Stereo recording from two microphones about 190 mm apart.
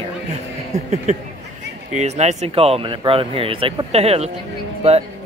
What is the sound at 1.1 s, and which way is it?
Speech, 35° right (ahead or behind).